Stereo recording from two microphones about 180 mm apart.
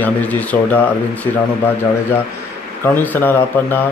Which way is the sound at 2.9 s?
10° left (ahead or behind).